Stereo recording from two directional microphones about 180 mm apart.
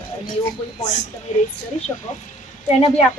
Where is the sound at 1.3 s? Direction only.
45° left (ahead or behind).